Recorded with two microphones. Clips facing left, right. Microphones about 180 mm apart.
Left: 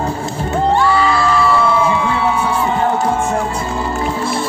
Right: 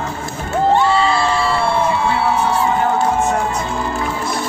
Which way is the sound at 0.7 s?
25° right (ahead or behind).